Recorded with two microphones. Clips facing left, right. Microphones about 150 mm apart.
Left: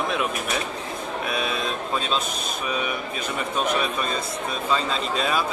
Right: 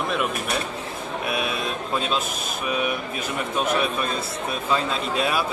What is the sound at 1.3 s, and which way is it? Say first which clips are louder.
Speech: right 1 dB; 10° right (ahead or behind).